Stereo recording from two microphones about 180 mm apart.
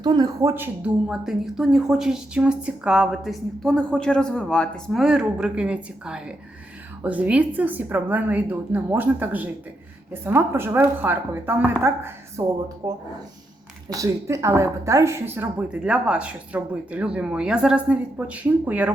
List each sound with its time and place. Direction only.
0.0 s speech: 20° right (ahead or behind)